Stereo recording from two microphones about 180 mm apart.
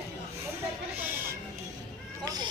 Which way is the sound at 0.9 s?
10° right (ahead or behind).